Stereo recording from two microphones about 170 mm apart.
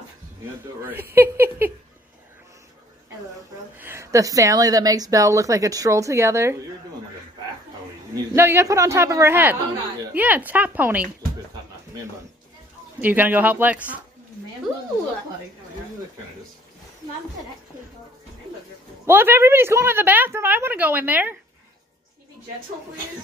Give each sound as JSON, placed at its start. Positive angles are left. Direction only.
{"t": 1.1, "sound": "a woman's voice", "side_deg": -15}
{"t": 3.7, "sound": "a woman's voice", "side_deg": -15}
{"t": 8.1, "sound": "a woman's voice", "side_deg": -15}
{"t": 13.0, "sound": "a woman's voice", "side_deg": -10}
{"t": 19.0, "sound": "a woman's voice", "side_deg": -15}